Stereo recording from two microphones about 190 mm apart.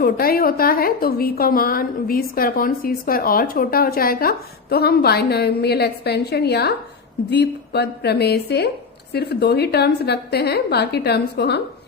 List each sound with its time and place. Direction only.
0.0 s a woman's voice: 50° left (ahead or behind)